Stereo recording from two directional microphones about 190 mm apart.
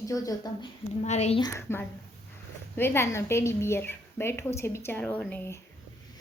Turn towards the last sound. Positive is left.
turn(degrees=10)  # may be behind; listen again after turning